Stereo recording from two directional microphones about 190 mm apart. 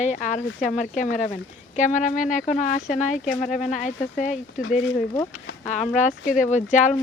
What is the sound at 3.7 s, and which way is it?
Speech, 40° left (ahead or behind).